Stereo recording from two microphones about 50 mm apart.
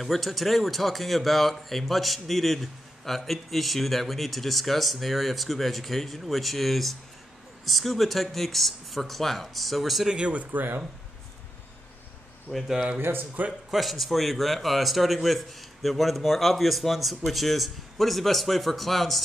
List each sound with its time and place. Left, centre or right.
0.0 s speech: centre
10.0 s speech: right
12.5 s speech: left
13.7 s speech: centre